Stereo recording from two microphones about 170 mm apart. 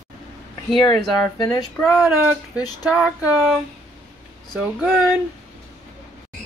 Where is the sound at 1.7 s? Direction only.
Centre (ahead or behind).